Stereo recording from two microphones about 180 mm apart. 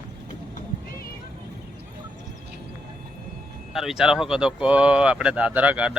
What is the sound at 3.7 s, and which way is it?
Speech, centre (ahead or behind).